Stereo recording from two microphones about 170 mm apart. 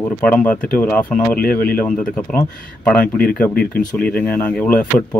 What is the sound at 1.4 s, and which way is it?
Speech, 60° left (ahead or behind).